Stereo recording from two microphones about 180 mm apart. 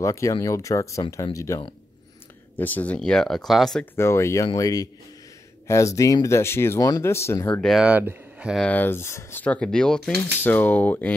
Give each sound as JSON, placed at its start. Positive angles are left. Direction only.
{"t": 0.0, "sound": "speech", "side_deg": 15}
{"t": 3.9, "sound": "speech", "side_deg": 15}
{"t": 7.6, "sound": "speech", "side_deg": -5}
{"t": 8.6, "sound": "speech", "side_deg": 10}